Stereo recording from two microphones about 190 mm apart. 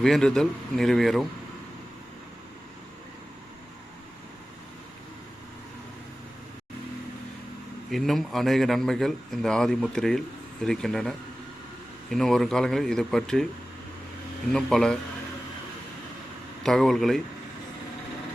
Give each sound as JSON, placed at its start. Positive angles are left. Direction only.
{"t": 0.0, "sound": "a man's voice", "side_deg": 5}
{"t": 7.9, "sound": "a man's voice", "side_deg": 0}
{"t": 12.1, "sound": "a man's voice", "side_deg": 0}
{"t": 14.5, "sound": "a man's voice", "side_deg": 5}
{"t": 16.6, "sound": "a man's voice", "side_deg": 0}